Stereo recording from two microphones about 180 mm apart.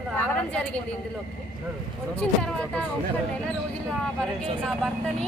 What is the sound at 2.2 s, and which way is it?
Speech, 5° left (ahead or behind).